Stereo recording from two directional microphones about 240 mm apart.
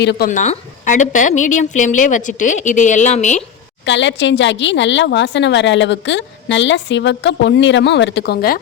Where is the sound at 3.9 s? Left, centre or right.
Left.